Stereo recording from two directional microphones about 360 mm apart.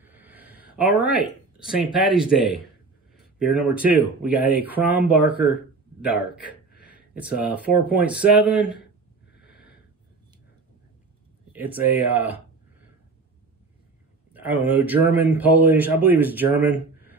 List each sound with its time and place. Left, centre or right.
0.0 s a sound: centre
1.0 s a man's voice: centre
3.3 s a man's voice: centre
9.3 s a sound: left
11.5 s a man's voice: centre
14.3 s a man's voice: centre